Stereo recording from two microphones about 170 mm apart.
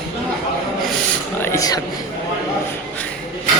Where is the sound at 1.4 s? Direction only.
15° left (ahead or behind).